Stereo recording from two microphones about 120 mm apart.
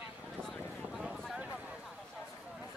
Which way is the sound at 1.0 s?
Centre (ahead or behind).